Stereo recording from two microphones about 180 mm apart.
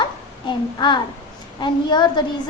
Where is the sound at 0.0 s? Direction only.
25° left (ahead or behind).